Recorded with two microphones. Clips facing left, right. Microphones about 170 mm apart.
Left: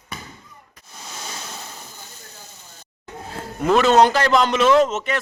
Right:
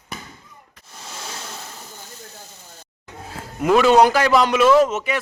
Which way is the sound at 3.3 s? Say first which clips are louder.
Right 1 dB; 5° right (ahead or behind).